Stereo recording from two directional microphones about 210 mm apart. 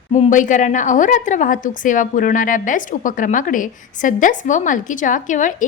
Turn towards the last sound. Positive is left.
turn(degrees=35)  # may be behind; listen again after turning